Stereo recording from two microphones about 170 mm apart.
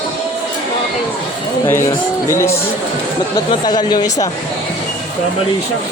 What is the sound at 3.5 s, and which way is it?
Speech, 25° left (ahead or behind).